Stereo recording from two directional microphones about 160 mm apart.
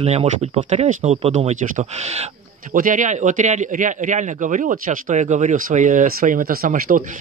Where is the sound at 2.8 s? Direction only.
55° right (ahead or behind).